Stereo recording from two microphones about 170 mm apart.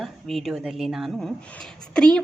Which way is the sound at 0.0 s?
Centre (ahead or behind).